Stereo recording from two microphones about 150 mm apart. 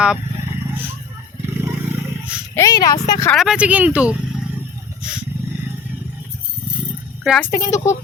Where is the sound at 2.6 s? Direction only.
25° left (ahead or behind).